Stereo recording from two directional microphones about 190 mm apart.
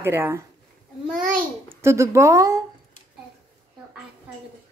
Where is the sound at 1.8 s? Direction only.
15° right (ahead or behind).